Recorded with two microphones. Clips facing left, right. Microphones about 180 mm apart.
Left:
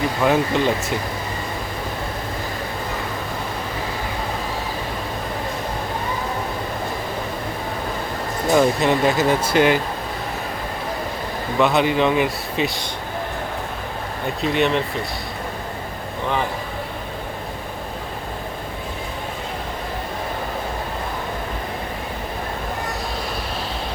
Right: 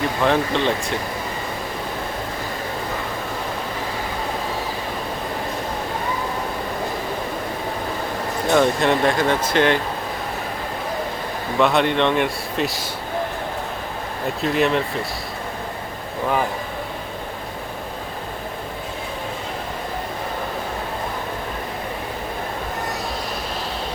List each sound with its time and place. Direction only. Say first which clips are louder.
0.2 s speech: left 1 dB; 5° left (ahead or behind)
8.4 s speech: left 1 dB; 5° left (ahead or behind)
11.5 s speech: even; centre (ahead or behind)
14.4 s speech: even; centre (ahead or behind)